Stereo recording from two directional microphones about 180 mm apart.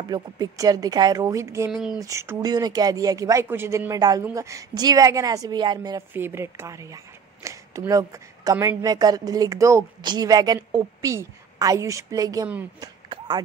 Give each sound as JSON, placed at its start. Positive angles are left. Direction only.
{"t": 0.1, "sound": "a woman's voice", "side_deg": -20}
{"t": 1.7, "sound": "speech", "side_deg": -5}
{"t": 2.0, "sound": "a woman's voice", "side_deg": -15}
{"t": 12.8, "sound": "a sound", "side_deg": -25}